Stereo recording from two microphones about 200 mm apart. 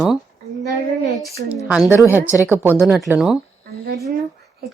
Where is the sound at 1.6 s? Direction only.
5° right (ahead or behind).